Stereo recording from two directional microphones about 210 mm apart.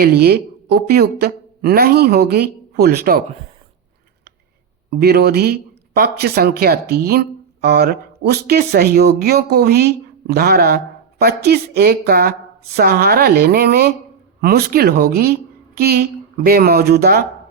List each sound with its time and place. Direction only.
0.0 s a woman's voice: 50° right (ahead or behind)
4.9 s speech: 50° right (ahead or behind)